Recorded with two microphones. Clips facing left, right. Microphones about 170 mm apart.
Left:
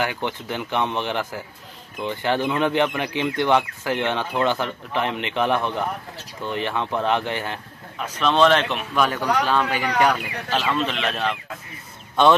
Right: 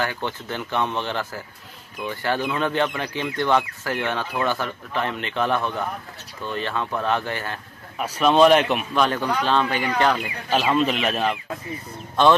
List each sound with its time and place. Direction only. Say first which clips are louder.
0.0 s speech: left 1 dB; 15° left (ahead or behind)
8.0 s speech: right 2 dB; 10° right (ahead or behind)
8.9 s speech: left 2 dB; 5° left (ahead or behind)
10.5 s speech: right 3 dB; 10° right (ahead or behind)